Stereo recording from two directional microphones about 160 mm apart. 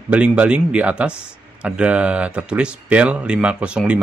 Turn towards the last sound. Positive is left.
turn(degrees=-5)  # may be behind; listen again after turning